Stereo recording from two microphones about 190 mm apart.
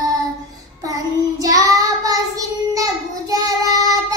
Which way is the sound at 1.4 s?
20° right (ahead or behind).